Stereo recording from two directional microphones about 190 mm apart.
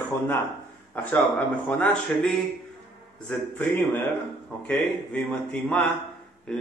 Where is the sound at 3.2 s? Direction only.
5° left (ahead or behind).